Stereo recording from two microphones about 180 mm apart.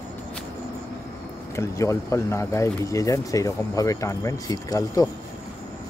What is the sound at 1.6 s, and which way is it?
Speech, 15° left (ahead or behind).